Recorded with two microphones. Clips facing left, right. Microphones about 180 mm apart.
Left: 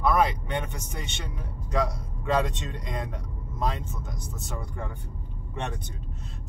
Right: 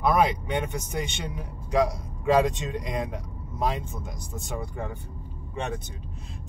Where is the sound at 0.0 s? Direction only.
15° right (ahead or behind).